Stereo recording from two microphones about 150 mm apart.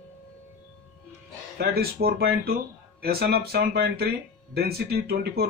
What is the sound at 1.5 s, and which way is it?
Speech, 90° right.